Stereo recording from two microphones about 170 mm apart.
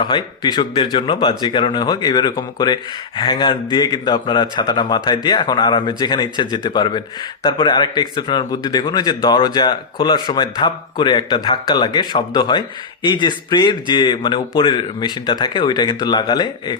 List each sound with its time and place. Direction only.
0.0 s speech: 25° left (ahead or behind)